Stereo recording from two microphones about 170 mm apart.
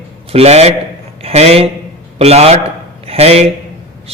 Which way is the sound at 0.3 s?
35° right (ahead or behind).